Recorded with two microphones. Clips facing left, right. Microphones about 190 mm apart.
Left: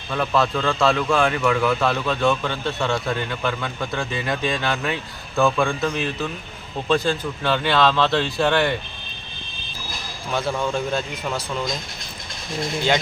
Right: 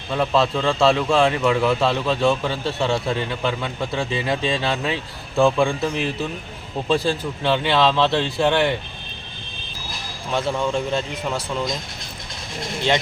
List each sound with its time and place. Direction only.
0.1 s a man's voice: 25° right (ahead or behind)
10.3 s a man's voice: centre (ahead or behind)